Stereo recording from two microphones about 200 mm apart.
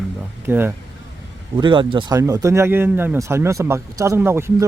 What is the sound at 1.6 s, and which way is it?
Speech, 25° right (ahead or behind).